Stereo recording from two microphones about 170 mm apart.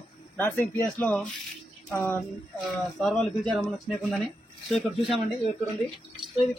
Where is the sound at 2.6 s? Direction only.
Centre (ahead or behind).